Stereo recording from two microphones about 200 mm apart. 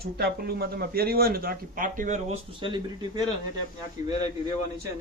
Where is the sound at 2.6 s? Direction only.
25° right (ahead or behind).